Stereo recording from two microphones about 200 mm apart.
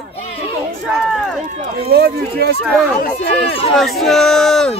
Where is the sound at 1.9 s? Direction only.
50° right (ahead or behind).